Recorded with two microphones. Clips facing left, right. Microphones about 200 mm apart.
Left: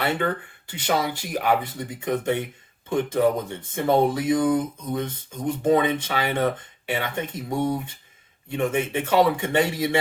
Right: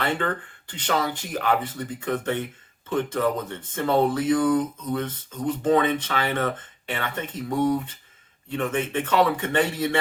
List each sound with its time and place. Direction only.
0.0 s speech: 10° left (ahead or behind)